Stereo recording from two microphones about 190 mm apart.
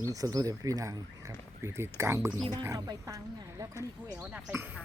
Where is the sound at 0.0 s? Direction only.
20° right (ahead or behind).